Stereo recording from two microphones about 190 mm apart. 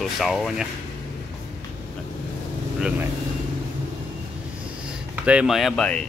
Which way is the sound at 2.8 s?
5° right (ahead or behind).